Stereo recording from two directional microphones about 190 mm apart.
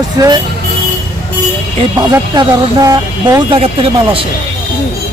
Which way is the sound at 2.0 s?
20° right (ahead or behind).